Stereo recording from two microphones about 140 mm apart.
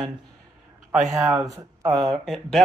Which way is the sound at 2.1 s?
5° left (ahead or behind).